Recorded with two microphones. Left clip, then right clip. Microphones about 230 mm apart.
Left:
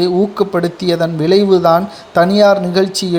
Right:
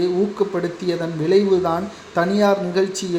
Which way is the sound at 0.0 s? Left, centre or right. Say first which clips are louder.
Left 6 dB; left.